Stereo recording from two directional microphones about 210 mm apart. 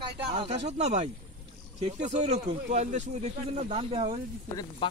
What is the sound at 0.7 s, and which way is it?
A man's voice, 35° right (ahead or behind).